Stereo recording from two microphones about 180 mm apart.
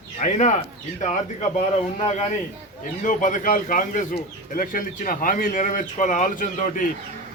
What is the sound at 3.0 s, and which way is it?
Speech, 45° left (ahead or behind).